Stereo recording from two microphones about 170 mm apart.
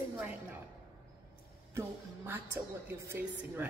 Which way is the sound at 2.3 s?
15° right (ahead or behind).